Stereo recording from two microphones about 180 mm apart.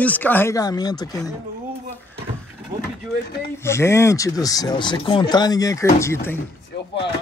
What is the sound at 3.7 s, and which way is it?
Speech, 15° left (ahead or behind).